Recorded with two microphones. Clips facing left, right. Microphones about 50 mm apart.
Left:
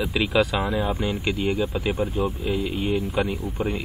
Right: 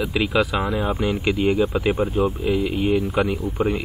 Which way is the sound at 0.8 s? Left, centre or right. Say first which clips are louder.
Right 2 dB; right.